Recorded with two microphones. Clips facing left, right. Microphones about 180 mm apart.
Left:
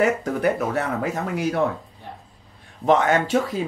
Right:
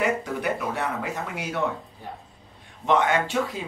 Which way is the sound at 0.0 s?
45° left (ahead or behind).